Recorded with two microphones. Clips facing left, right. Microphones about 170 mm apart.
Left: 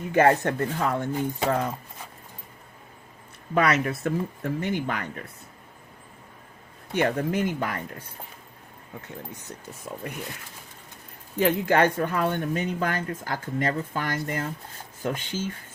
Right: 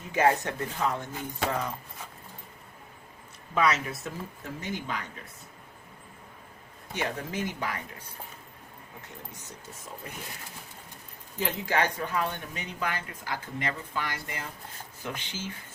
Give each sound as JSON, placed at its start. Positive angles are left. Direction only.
{"t": 0.1, "sound": "speech", "side_deg": 55}
{"t": 3.5, "sound": "speech", "side_deg": 60}
{"t": 6.9, "sound": "speech", "side_deg": 55}
{"t": 11.3, "sound": "speech", "side_deg": 60}